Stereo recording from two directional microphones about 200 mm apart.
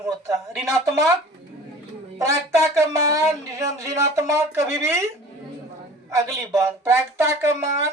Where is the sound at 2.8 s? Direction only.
15° right (ahead or behind).